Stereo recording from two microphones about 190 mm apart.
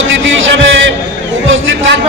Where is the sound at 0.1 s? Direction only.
80° right.